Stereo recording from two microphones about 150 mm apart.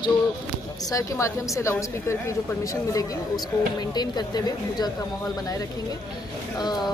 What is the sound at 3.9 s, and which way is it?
Speech, 25° left (ahead or behind).